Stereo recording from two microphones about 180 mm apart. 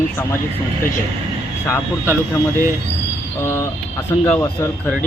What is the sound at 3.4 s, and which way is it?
A man's voice, 15° left (ahead or behind).